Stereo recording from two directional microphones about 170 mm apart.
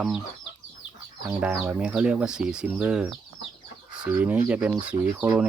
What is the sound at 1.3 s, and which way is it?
Speech, 5° right (ahead or behind).